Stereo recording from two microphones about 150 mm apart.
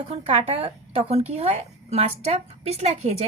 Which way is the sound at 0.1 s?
40° right (ahead or behind).